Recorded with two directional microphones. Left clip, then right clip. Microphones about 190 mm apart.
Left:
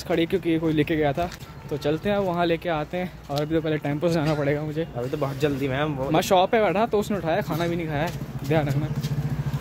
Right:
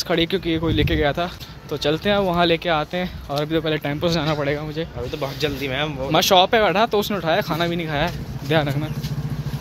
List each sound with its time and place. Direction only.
0.1 s speech: 5° left (ahead or behind)
1.8 s speech: 10° right (ahead or behind); by 4.8 s 15° left (ahead or behind)
5.2 s speech: 35° left (ahead or behind)
6.1 s speech: 5° left (ahead or behind)